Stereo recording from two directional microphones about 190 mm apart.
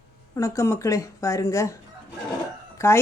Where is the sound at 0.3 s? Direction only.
15° left (ahead or behind).